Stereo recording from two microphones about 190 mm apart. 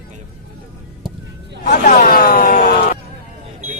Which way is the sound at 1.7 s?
50° left (ahead or behind).